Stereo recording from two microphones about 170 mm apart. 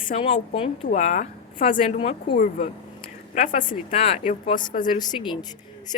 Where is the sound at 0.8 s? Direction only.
45° left (ahead or behind).